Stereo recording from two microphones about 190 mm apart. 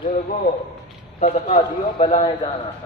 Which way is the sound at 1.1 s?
40° left (ahead or behind).